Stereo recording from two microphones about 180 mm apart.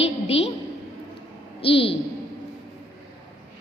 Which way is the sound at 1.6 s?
30° left (ahead or behind).